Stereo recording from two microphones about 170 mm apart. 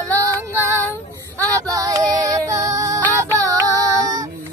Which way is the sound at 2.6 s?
20° right (ahead or behind).